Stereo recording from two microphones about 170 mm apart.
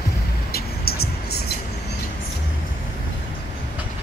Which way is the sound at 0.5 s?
65° left (ahead or behind).